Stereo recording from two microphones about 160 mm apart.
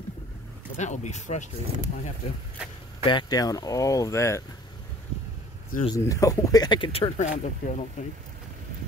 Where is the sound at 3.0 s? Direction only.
30° left (ahead or behind).